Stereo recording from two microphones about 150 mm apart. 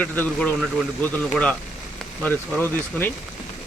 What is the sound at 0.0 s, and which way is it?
Speech, 10° left (ahead or behind).